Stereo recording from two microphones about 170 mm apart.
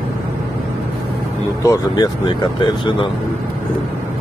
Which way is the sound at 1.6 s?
20° left (ahead or behind).